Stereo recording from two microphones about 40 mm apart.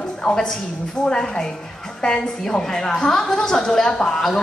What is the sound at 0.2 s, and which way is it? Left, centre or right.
A woman's voice, centre.